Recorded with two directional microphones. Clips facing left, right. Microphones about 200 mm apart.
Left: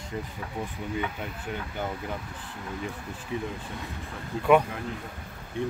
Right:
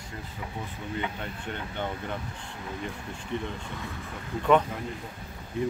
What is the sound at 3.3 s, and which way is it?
Speech, 5° left (ahead or behind).